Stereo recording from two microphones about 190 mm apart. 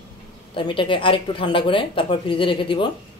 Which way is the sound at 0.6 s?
25° left (ahead or behind).